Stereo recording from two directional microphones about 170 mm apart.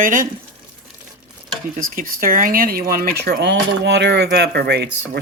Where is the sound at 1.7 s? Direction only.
55° right (ahead or behind).